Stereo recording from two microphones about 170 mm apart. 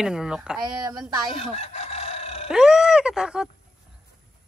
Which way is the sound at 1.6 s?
35° left (ahead or behind).